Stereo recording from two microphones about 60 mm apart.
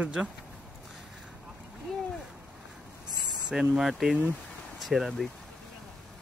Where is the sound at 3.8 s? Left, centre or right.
Centre.